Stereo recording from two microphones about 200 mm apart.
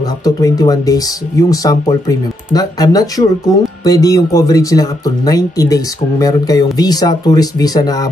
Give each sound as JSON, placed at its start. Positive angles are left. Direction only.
{"t": 0.0, "sound": "speech", "side_deg": 20}